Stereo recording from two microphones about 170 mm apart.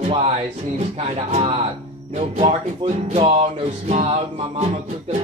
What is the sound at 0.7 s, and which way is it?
Music, 35° right (ahead or behind).